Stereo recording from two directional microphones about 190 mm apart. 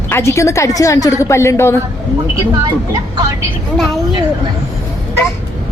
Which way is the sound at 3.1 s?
20° right (ahead or behind).